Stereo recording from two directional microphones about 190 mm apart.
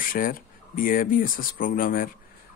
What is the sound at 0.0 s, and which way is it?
Speech, 50° left (ahead or behind).